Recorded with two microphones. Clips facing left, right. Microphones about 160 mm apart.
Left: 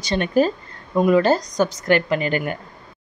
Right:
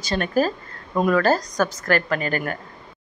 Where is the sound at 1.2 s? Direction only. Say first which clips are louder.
Left 2 dB; 25° left (ahead or behind).